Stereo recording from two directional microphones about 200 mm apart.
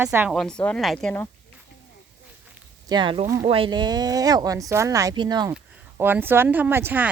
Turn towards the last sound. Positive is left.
turn(degrees=-10)  # may be behind; listen again after turning